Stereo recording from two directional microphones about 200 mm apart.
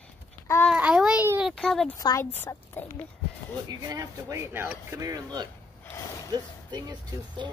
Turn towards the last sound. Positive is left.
turn(degrees=-20)  # may be behind; listen again after turning